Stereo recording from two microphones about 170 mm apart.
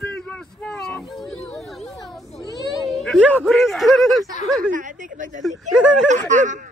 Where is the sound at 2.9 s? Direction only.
5° left (ahead or behind).